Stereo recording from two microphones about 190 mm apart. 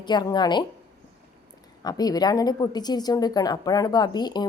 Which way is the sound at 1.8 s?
20° left (ahead or behind).